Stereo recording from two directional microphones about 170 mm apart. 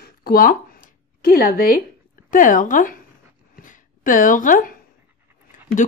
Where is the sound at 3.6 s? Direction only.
50° left (ahead or behind).